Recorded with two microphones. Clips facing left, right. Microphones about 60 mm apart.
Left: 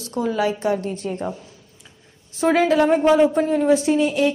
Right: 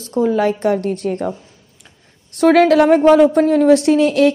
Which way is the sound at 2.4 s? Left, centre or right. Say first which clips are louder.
Right 6 dB; right.